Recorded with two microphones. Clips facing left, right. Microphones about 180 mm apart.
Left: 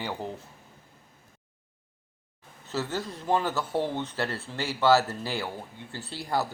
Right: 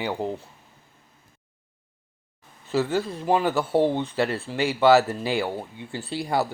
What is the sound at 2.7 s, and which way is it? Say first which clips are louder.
Speech: right 7 dB; 10° right (ahead or behind).